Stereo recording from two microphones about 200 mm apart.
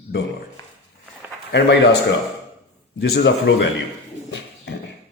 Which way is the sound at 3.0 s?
60° left (ahead or behind).